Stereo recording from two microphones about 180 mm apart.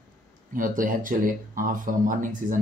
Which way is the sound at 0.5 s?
50° right (ahead or behind).